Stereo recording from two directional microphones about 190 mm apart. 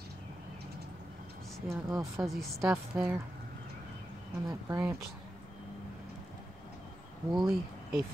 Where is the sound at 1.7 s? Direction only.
15° right (ahead or behind).